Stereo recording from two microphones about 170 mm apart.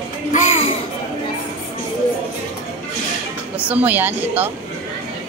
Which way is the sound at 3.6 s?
10° right (ahead or behind).